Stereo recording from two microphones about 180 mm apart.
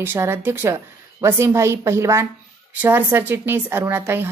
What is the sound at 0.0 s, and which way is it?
A woman's voice, 15° right (ahead or behind).